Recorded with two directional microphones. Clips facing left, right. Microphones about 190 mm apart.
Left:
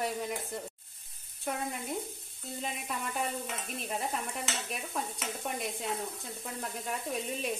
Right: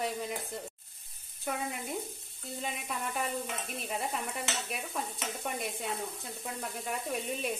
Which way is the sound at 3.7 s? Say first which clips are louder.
Even; centre (ahead or behind).